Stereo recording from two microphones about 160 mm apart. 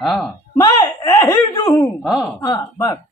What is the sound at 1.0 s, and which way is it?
Speech, 20° left (ahead or behind).